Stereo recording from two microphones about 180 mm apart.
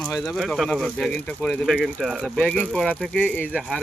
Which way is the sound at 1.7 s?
5° right (ahead or behind).